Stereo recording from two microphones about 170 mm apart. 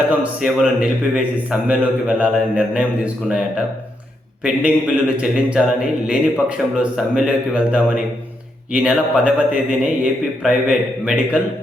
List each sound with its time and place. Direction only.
0.2 s a man's voice: 5° right (ahead or behind)